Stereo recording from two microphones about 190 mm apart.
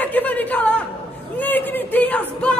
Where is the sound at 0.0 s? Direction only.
10° left (ahead or behind).